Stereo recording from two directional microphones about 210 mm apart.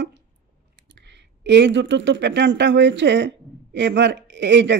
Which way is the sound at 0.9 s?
55° right (ahead or behind).